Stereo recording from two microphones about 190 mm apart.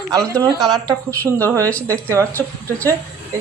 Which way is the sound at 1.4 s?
15° right (ahead or behind).